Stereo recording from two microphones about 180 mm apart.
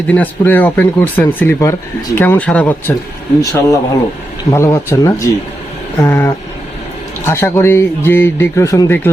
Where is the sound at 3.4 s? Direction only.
20° left (ahead or behind).